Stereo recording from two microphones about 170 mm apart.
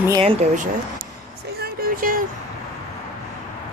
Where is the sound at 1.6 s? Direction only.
55° right (ahead or behind).